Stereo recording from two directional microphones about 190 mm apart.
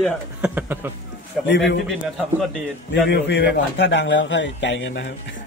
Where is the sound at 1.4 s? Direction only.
70° left (ahead or behind).